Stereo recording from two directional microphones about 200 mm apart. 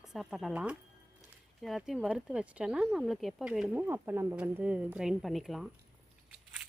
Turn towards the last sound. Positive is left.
turn(degrees=0)  # may be behind; listen again after turning